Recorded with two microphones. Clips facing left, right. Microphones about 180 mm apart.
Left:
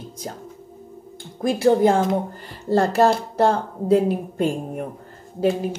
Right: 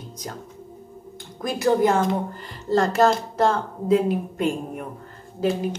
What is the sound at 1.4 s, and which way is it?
A woman's voice, 30° left (ahead or behind).